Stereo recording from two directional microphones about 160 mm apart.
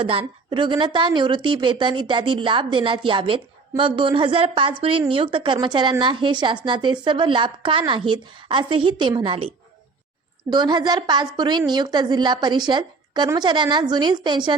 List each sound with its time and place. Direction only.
0.0 s a woman's voice: 35° right (ahead or behind)
10.5 s a woman's voice: 25° right (ahead or behind)